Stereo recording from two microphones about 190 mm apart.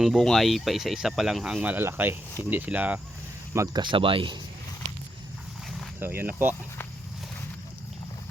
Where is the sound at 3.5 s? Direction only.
20° right (ahead or behind).